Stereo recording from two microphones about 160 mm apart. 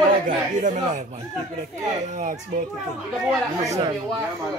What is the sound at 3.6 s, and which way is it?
Speech, 20° right (ahead or behind).